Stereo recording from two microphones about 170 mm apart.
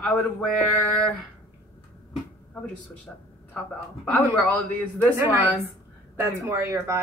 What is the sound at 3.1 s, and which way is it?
A man's voice, 5° left (ahead or behind).